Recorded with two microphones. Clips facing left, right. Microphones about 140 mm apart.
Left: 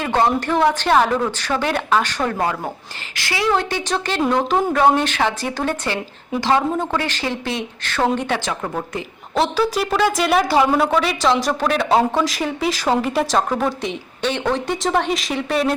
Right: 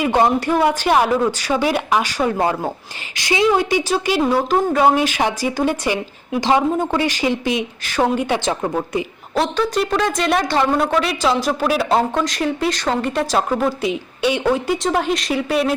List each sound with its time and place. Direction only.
0.0 s a woman's voice: 10° right (ahead or behind)
8.4 s a woman's voice: 20° right (ahead or behind)
9.3 s a woman's voice: centre (ahead or behind)